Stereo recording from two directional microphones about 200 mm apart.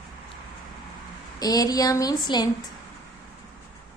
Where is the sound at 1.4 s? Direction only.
20° left (ahead or behind).